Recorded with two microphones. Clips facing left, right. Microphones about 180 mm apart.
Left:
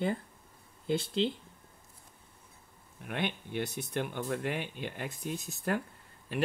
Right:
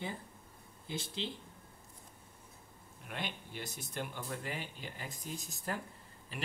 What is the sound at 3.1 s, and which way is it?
Speech, 60° left (ahead or behind).